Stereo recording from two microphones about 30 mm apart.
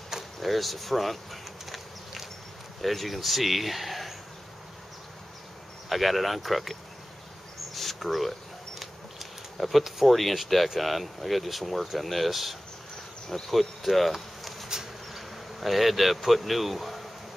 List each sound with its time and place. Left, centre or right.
0.4 s a sound: centre
2.8 s speech: centre
5.9 s speech: centre
7.7 s a sound: centre
9.8 s speech: centre
13.3 s insect: centre